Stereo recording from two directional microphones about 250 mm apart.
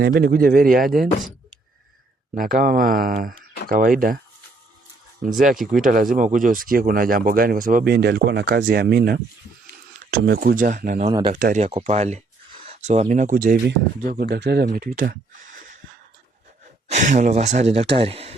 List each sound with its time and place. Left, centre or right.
0.0 s speech: right
2.3 s speech: right
5.2 s speech: right
11.1 s speech: centre
11.3 s speech: right
16.9 s speech: right